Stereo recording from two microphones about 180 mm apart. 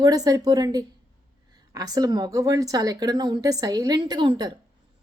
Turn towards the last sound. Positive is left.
turn(degrees=-25)  # may be behind; listen again after turning